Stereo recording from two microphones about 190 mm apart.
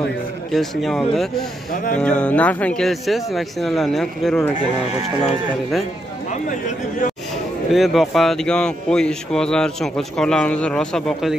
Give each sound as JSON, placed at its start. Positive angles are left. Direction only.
{"t": 0.5, "sound": "speech", "side_deg": 0}
{"t": 7.7, "sound": "speech", "side_deg": 0}